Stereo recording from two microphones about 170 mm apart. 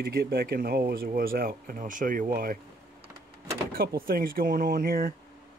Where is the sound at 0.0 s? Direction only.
65° right (ahead or behind).